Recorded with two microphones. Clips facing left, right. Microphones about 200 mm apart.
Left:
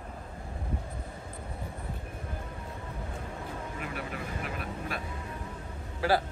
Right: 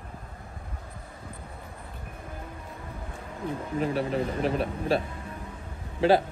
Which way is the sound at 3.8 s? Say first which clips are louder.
Right 14 dB; 30° right (ahead or behind).